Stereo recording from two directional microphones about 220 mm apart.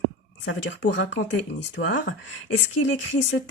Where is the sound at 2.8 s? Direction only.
55° left (ahead or behind).